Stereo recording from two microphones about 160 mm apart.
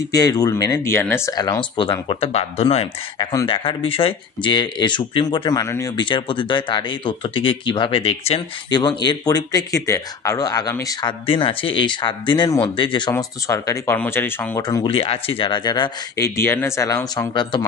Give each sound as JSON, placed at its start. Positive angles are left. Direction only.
{"t": 0.1, "sound": "speech", "side_deg": 25}
{"t": 6.0, "sound": "speech", "side_deg": 30}
{"t": 8.6, "sound": "speech", "side_deg": 25}
{"t": 13.1, "sound": "speech", "side_deg": 20}
{"t": 14.8, "sound": "speech", "side_deg": 35}